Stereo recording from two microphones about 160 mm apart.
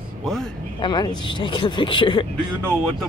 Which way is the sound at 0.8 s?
30° left (ahead or behind).